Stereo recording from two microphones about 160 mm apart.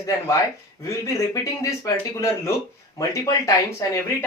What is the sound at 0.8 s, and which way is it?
Speech, 20° left (ahead or behind).